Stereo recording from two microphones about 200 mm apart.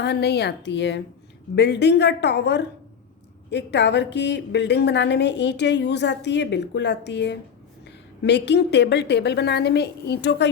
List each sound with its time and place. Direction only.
0.0 s a woman's voice: 55° left (ahead or behind)